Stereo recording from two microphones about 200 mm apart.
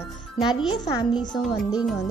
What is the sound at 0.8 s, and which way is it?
Speech, 20° left (ahead or behind).